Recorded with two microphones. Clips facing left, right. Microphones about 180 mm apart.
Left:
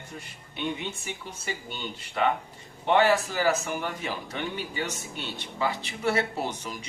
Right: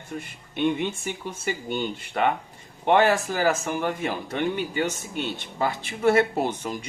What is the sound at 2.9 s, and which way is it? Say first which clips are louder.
Speech: right 2 dB; 50° right (ahead or behind).